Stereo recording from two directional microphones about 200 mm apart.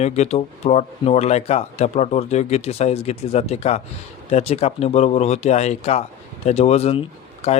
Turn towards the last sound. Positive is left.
turn(degrees=30)  # may be behind; listen again after turning